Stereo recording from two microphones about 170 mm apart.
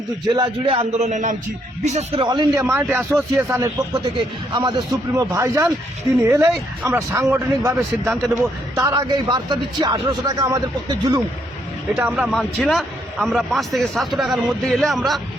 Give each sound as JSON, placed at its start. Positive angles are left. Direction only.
{"t": 0.3, "sound": "a man's voice", "side_deg": -30}
{"t": 2.2, "sound": "a man's voice", "side_deg": -25}
{"t": 11.9, "sound": "a man's voice", "side_deg": -10}